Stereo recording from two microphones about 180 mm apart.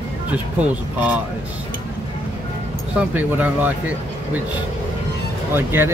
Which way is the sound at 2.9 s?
10° right (ahead or behind).